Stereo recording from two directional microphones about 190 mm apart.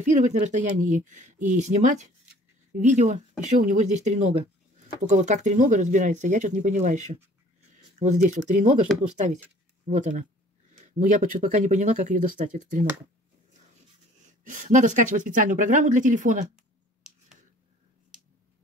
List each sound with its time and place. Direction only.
0.1 s speech: 40° right (ahead or behind)
14.4 s speech: 45° right (ahead or behind)